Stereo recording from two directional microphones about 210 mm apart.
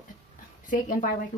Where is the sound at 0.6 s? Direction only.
40° left (ahead or behind).